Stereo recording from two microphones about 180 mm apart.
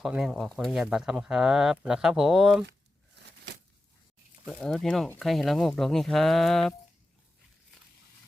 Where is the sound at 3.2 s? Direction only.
70° right (ahead or behind).